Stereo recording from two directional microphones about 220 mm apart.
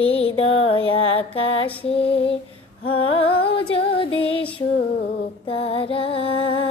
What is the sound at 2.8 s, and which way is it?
Music, 25° left (ahead or behind).